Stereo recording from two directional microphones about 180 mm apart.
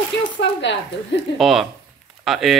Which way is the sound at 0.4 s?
80° left.